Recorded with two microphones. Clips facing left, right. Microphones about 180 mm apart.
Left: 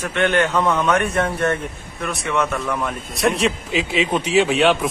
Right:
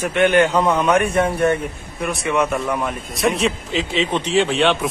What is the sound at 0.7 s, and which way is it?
Speech, centre (ahead or behind).